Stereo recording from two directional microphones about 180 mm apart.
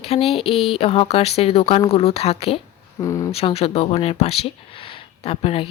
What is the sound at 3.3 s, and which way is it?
Speech, 35° left (ahead or behind).